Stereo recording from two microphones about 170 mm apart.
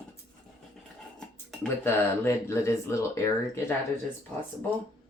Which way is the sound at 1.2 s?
10° left (ahead or behind).